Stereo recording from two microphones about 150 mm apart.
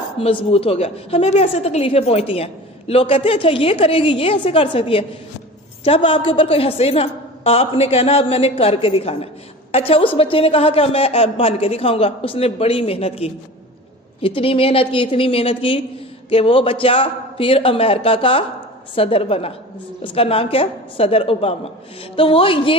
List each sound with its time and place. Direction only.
0.2 s a woman's voice: 40° left (ahead or behind)